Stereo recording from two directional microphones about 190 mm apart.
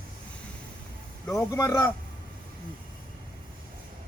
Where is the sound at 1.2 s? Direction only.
15° left (ahead or behind).